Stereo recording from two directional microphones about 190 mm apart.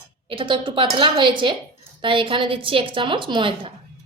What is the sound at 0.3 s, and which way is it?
A woman's voice, 25° right (ahead or behind).